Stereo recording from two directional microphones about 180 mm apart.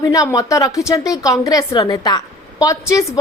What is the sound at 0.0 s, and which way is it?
A woman's voice, 20° left (ahead or behind).